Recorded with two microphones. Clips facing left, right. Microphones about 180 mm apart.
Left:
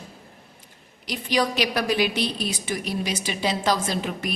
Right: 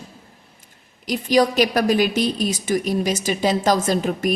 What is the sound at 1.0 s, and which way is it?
A woman's voice, 45° right (ahead or behind).